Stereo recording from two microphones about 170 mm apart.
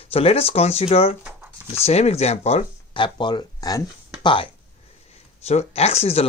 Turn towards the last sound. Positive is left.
turn(degrees=35)  # may be behind; listen again after turning